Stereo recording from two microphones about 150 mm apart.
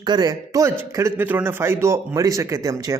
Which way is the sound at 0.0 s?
25° right (ahead or behind).